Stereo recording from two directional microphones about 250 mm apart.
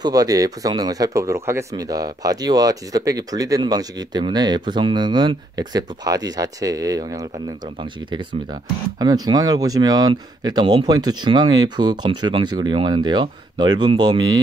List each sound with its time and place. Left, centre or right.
0.0 s speech: centre
9.0 s speech: centre